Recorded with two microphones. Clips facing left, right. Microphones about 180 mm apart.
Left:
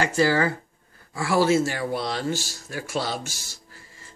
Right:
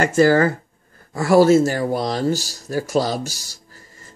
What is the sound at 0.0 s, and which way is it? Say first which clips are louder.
Speech: right 6 dB; 45° right (ahead or behind).